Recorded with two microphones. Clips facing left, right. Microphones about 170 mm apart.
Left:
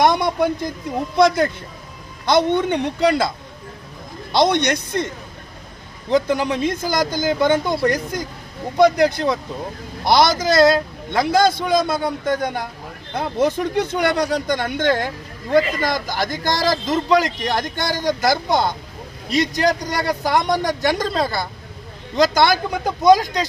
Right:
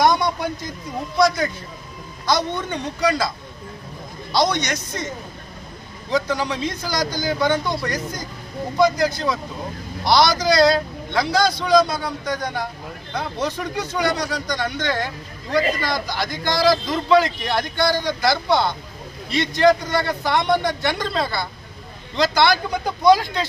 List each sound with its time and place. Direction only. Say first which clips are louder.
0.0 s speech: left 2 dB; 60° left (ahead or behind)
4.4 s a man's voice: left 4 dB; 60° left (ahead or behind)
8.7 s a man's voice: left 4 dB; 60° left (ahead or behind); by 23.4 s 45° left (ahead or behind)